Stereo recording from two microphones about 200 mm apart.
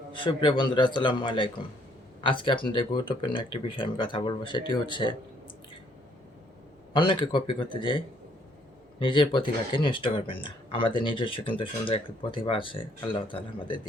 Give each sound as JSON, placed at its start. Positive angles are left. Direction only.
{"t": 0.1, "sound": "speech", "side_deg": 25}
{"t": 6.9, "sound": "speech", "side_deg": 25}